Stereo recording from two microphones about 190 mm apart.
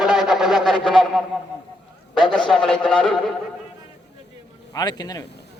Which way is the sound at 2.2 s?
Centre (ahead or behind).